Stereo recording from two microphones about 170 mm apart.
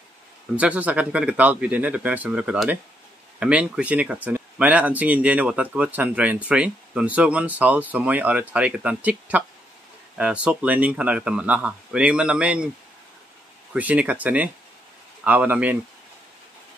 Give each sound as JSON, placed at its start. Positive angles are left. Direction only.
{"t": 0.6, "sound": "speech", "side_deg": -10}
{"t": 13.7, "sound": "speech", "side_deg": -10}